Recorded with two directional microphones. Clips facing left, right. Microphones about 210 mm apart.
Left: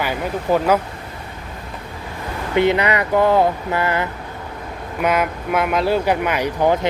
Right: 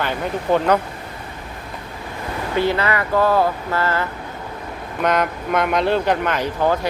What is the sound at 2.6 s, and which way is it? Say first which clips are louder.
Speech: left 3 dB; 20° left (ahead or behind).